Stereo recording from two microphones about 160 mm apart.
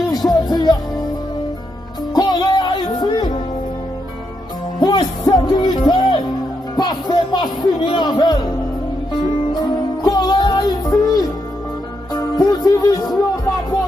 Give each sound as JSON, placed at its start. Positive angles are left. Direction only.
{"t": 0.1, "sound": "music", "side_deg": 25}
{"t": 2.1, "sound": "music", "side_deg": 25}
{"t": 4.7, "sound": "music", "side_deg": 25}
{"t": 7.6, "sound": "speech", "side_deg": 25}
{"t": 9.5, "sound": "music", "side_deg": 25}